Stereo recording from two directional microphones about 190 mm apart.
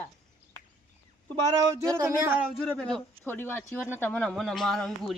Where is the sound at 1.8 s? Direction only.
15° right (ahead or behind).